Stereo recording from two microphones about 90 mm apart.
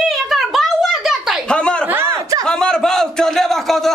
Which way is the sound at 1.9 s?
25° right (ahead or behind).